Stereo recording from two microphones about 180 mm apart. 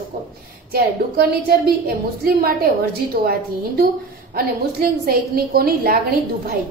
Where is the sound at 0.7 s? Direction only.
55° right (ahead or behind).